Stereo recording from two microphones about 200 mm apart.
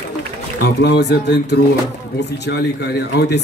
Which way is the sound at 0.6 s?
55° left (ahead or behind).